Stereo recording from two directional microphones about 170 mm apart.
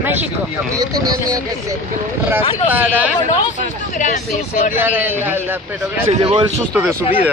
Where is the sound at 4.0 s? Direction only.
45° left (ahead or behind).